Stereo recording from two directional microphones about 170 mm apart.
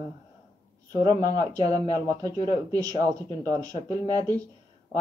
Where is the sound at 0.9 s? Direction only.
25° right (ahead or behind).